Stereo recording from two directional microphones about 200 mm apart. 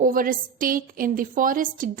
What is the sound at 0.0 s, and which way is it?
A woman's voice, 45° right (ahead or behind).